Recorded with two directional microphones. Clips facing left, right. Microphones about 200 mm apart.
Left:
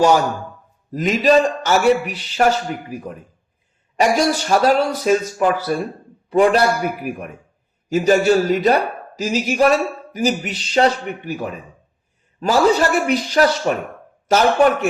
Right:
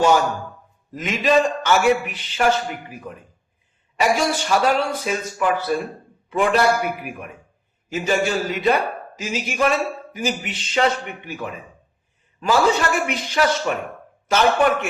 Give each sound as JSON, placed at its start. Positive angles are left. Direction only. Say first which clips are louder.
{"t": 0.9, "sound": "a man's voice", "louder": "left 4 dB", "side_deg": 40}